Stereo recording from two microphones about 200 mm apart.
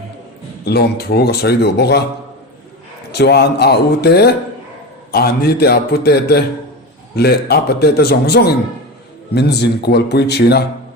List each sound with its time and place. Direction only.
0.6 s speech: 55° left (ahead or behind)
3.1 s speech: 55° left (ahead or behind)